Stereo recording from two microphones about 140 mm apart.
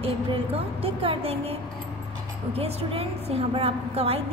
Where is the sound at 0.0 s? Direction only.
45° right (ahead or behind).